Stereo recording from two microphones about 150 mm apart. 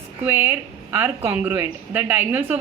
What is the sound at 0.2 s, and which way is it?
A woman's voice, 15° right (ahead or behind).